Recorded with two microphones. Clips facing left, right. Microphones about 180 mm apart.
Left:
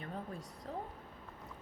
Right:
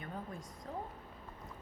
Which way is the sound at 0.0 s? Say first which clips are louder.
Left 1 dB; 35° left (ahead or behind).